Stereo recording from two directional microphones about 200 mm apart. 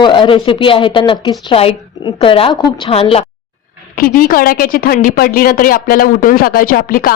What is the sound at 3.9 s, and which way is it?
A woman's voice, 45° left (ahead or behind).